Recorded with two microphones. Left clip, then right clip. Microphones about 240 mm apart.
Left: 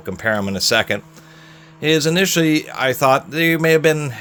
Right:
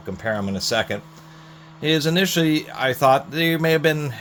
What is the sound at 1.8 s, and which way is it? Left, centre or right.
Speech, left.